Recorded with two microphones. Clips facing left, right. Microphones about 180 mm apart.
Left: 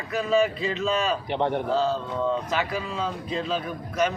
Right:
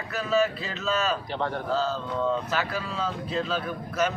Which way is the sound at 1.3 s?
25° left (ahead or behind).